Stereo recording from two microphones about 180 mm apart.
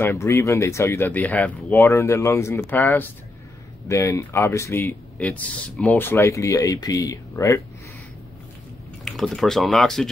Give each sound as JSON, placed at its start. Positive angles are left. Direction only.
{"t": 0.0, "sound": "speech", "side_deg": 15}
{"t": 9.0, "sound": "speech", "side_deg": 0}